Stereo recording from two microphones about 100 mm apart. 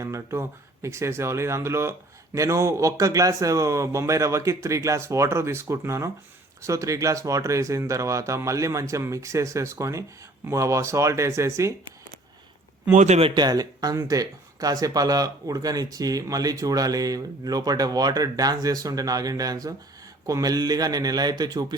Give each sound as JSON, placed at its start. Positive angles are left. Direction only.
{"t": 0.0, "sound": "speech", "side_deg": -30}
{"t": 13.3, "sound": "speech", "side_deg": -45}